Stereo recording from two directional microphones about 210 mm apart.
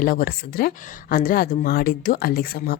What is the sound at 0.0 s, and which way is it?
A woman's voice, 40° left (ahead or behind).